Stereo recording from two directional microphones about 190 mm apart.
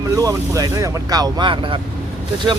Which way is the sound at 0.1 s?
20° right (ahead or behind).